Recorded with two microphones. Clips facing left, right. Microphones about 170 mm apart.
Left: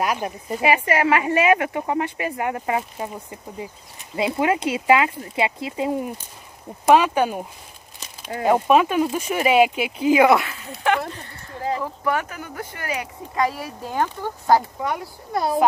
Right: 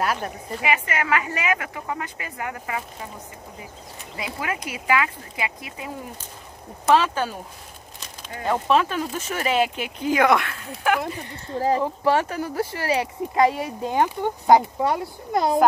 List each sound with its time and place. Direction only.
0.0 s speech: 10° left (ahead or behind)
0.6 s speech: 30° left (ahead or behind)
4.2 s speech: 25° left (ahead or behind)
6.9 s speech: 15° left (ahead or behind)
8.6 s speech: 10° left (ahead or behind); by 11.2 s 5° right (ahead or behind)
11.2 s speech: 25° right (ahead or behind)